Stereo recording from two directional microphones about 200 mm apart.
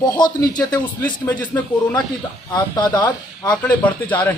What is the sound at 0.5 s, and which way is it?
Speech, 20° left (ahead or behind).